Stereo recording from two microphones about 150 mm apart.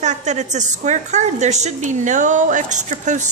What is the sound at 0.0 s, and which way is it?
A woman's voice, 50° right (ahead or behind).